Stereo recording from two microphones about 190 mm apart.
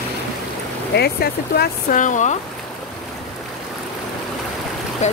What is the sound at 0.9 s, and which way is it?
Speech, 55° left (ahead or behind).